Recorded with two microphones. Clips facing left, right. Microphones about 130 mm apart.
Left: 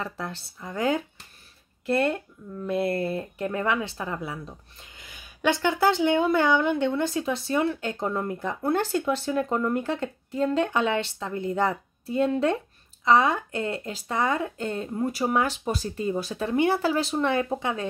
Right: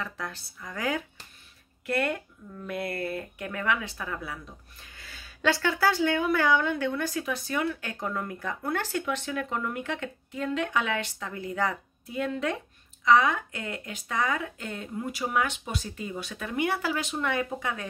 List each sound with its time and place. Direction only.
0.0 s speech: 30° left (ahead or behind)